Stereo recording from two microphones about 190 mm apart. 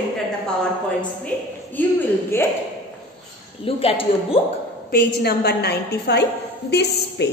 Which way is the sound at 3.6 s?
30° left (ahead or behind).